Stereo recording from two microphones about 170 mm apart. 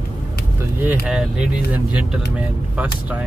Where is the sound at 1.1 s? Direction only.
5° right (ahead or behind).